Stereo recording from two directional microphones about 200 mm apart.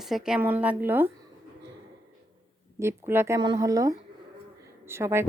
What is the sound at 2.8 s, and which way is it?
Speech, 10° right (ahead or behind).